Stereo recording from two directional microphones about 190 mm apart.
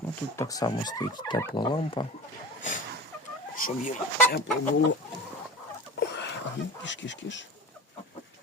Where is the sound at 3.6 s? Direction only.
45° left (ahead or behind).